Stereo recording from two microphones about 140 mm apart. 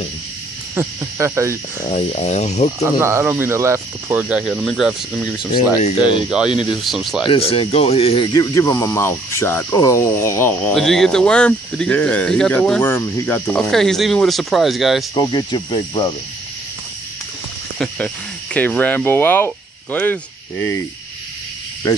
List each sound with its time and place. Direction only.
0.7 s speech: 20° right (ahead or behind)
1.9 s speech: 55° left (ahead or behind)
3.0 s speech: 20° right (ahead or behind)
4.2 s speech: 5° right (ahead or behind)
6.5 s speech: 35° left (ahead or behind)
6.8 s speech: centre (ahead or behind)
7.2 s speech: 45° left (ahead or behind)
8.3 s cricket: 25° left (ahead or behind)
10.7 s speech: 5° left (ahead or behind)
15.1 s speech: 30° left (ahead or behind)
17.7 s speech: 10° left (ahead or behind)